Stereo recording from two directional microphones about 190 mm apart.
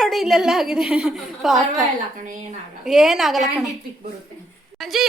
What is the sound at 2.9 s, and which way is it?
Speech, centre (ahead or behind).